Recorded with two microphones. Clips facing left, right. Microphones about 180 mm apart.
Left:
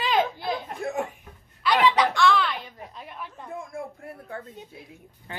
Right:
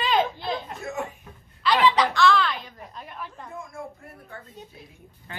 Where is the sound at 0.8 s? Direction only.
55° left (ahead or behind).